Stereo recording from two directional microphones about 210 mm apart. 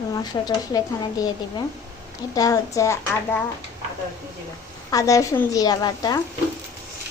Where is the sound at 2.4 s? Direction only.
15° left (ahead or behind).